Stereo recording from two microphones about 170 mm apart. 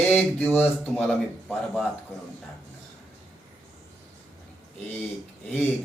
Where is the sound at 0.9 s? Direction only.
Centre (ahead or behind).